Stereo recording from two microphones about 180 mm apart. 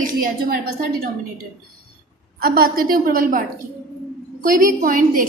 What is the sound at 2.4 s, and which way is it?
A woman's voice, 55° right (ahead or behind).